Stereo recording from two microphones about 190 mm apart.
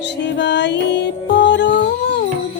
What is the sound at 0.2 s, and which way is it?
Music, 65° left (ahead or behind).